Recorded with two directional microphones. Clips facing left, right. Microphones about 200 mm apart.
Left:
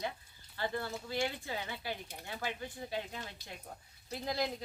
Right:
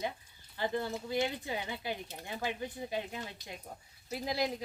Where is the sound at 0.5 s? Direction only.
15° right (ahead or behind).